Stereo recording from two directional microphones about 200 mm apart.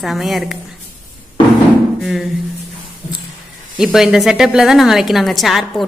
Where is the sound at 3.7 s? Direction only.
Centre (ahead or behind).